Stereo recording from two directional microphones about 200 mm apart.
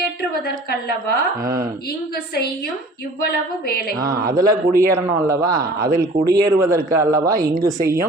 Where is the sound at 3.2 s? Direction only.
50° left (ahead or behind).